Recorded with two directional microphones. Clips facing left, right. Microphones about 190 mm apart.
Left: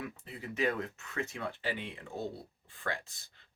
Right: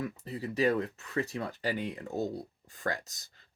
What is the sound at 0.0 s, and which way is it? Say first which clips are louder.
Speech: right 6 dB; 35° right (ahead or behind).